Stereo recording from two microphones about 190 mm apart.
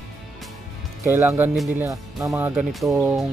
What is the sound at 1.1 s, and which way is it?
Speech, 15° right (ahead or behind).